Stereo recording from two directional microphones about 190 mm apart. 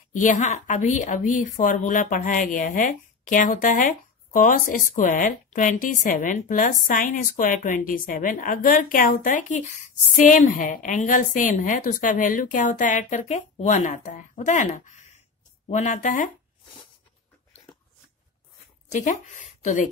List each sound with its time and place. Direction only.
0.1 s a woman's voice: 40° left (ahead or behind)
18.9 s a woman's voice: 40° left (ahead or behind)